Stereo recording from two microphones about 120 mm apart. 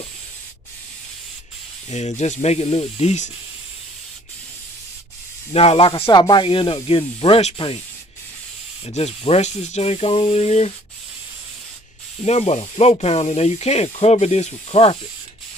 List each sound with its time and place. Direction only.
1.9 s speech: 70° left (ahead or behind)
5.5 s speech: 55° left (ahead or behind)
6.1 s speech: 40° left (ahead or behind)
8.8 s speech: 60° left (ahead or behind)
12.2 s speech: 65° left (ahead or behind)